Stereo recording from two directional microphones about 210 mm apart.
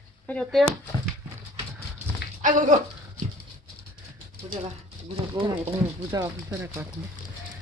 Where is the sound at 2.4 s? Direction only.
40° right (ahead or behind).